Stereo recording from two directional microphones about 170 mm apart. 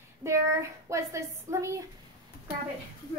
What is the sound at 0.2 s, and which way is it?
A woman's voice, 15° right (ahead or behind).